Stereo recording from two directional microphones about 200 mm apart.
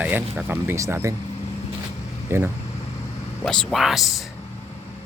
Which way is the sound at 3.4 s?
5° left (ahead or behind).